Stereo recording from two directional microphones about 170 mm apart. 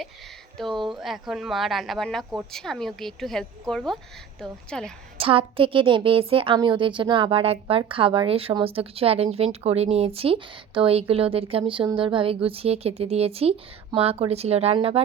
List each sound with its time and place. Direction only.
0.5 s a woman's voice: centre (ahead or behind)
5.2 s a woman's voice: 30° right (ahead or behind)